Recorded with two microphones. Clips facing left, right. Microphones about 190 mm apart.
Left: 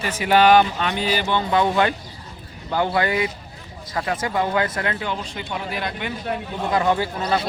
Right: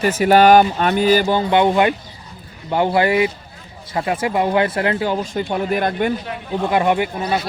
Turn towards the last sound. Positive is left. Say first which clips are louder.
# right 2 dB
turn(degrees=-10)  # may be behind; listen again after turning